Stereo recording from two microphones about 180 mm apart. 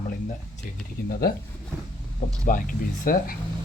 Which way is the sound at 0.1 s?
40° left (ahead or behind).